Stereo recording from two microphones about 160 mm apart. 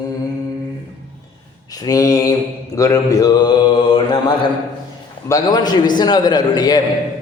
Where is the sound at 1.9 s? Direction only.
20° left (ahead or behind).